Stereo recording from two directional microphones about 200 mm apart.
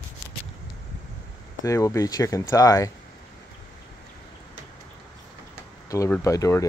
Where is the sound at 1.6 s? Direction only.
15° left (ahead or behind).